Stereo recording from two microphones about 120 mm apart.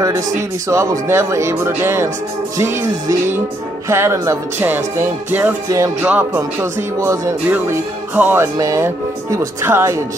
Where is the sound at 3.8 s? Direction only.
20° right (ahead or behind).